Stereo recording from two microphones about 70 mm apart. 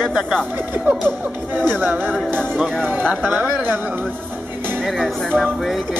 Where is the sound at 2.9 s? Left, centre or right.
Right.